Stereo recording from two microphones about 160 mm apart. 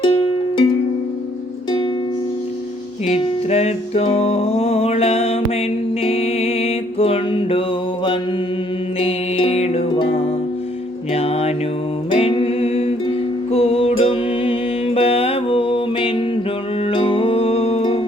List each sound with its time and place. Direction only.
0.0 s music: 30° left (ahead or behind)
3.1 s music: 40° left (ahead or behind)
9.0 s music: 35° left (ahead or behind)